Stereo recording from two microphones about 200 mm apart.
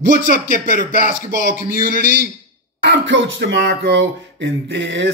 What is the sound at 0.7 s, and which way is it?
Speech, 45° right (ahead or behind).